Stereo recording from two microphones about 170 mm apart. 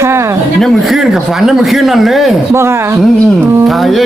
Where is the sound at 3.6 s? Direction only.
Centre (ahead or behind).